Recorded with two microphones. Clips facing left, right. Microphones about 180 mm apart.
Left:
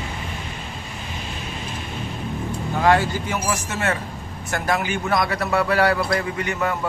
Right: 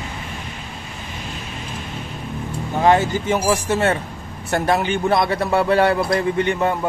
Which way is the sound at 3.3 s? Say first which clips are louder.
Right 9 dB; 30° right (ahead or behind).